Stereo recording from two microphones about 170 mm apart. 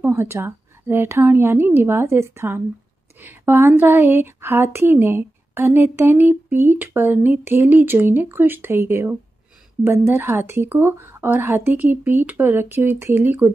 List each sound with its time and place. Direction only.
0.0 s speech: 15° right (ahead or behind)